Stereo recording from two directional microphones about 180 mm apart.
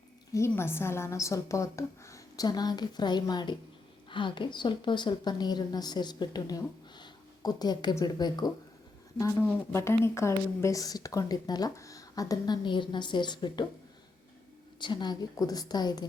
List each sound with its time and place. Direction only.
0.3 s a woman's voice: 15° left (ahead or behind)
14.8 s speech: 25° left (ahead or behind)